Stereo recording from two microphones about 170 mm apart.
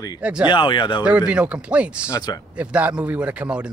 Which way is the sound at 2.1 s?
25° left (ahead or behind).